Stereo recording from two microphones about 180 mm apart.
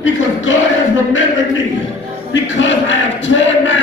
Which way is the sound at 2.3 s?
90° left.